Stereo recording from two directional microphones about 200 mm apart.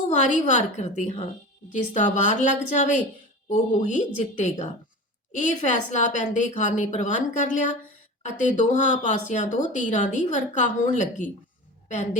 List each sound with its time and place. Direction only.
0.1 s speech: 35° left (ahead or behind)